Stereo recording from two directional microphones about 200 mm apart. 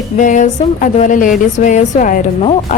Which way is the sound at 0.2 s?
40° left (ahead or behind).